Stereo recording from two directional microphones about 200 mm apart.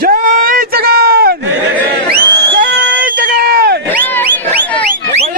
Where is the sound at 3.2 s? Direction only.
50° right (ahead or behind).